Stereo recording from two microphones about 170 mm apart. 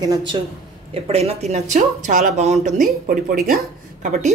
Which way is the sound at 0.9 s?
35° right (ahead or behind).